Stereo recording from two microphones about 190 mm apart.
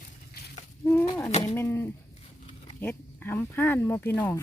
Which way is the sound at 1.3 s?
35° left (ahead or behind).